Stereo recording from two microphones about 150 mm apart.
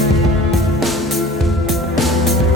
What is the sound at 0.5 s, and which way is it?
Music, centre (ahead or behind).